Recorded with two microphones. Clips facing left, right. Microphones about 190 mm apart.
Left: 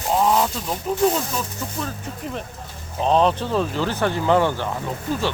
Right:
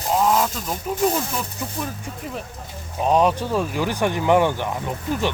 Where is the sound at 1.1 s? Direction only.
15° right (ahead or behind).